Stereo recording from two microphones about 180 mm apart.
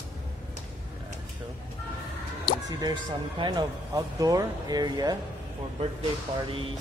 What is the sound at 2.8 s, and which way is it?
A man's voice, 25° right (ahead or behind).